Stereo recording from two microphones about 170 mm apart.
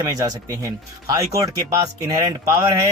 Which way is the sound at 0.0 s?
20° right (ahead or behind).